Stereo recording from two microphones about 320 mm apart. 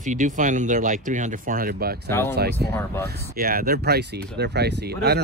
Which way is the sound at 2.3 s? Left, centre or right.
Right.